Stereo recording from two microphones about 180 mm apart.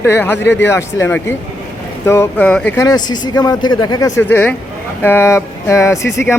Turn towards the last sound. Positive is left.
turn(degrees=15)  # may be behind; listen again after turning